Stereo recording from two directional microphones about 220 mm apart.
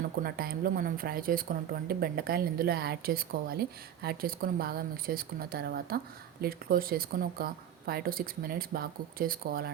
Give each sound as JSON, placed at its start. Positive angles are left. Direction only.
{"t": 0.2, "sound": "speech", "side_deg": -45}